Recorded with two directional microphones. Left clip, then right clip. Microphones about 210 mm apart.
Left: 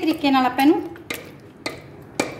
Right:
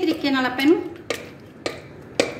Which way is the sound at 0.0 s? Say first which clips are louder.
Left 3 dB; 50° left (ahead or behind).